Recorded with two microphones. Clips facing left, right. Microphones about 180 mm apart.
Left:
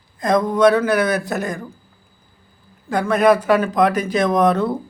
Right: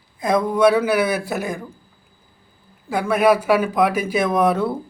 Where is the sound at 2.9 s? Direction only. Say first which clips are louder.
Left 1 dB; 10° right (ahead or behind).